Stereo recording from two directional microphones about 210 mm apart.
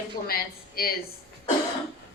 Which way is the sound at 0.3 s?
45° left (ahead or behind).